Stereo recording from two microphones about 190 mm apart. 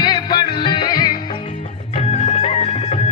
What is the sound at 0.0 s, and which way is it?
Music, 25° left (ahead or behind).